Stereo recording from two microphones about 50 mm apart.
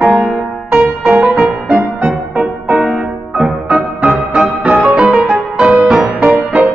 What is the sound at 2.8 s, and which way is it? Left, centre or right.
Music, centre.